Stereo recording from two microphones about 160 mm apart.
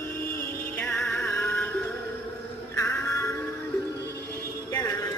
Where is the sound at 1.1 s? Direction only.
15° left (ahead or behind).